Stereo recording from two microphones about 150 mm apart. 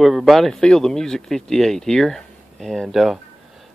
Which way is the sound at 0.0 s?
Centre (ahead or behind).